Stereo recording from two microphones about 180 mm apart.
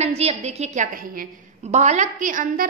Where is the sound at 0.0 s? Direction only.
35° right (ahead or behind).